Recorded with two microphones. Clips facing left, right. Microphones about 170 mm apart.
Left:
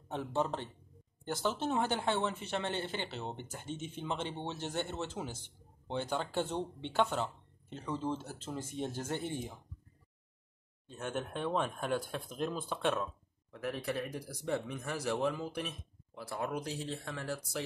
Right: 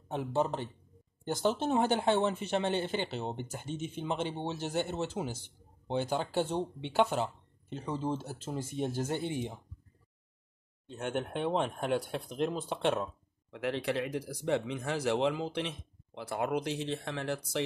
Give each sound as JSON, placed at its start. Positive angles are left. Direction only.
{"t": 0.1, "sound": "speech", "side_deg": -15}
{"t": 10.9, "sound": "speech", "side_deg": -65}
{"t": 11.4, "sound": "speech", "side_deg": -20}
{"t": 12.4, "sound": "speech", "side_deg": -65}
{"t": 13.5, "sound": "speech", "side_deg": -90}
{"t": 16.2, "sound": "speech", "side_deg": -75}